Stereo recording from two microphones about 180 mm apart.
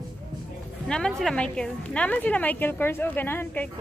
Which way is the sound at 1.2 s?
5° left (ahead or behind).